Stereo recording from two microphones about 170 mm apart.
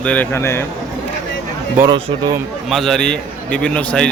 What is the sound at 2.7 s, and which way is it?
Speech, centre (ahead or behind).